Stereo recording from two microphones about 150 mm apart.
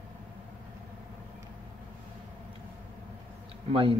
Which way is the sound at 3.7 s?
35° right (ahead or behind).